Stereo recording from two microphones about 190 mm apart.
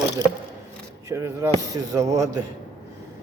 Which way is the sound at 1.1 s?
15° right (ahead or behind).